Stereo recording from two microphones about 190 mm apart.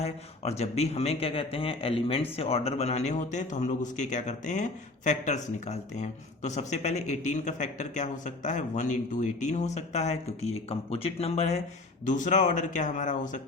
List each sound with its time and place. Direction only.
0.0 s a man's voice: 35° left (ahead or behind)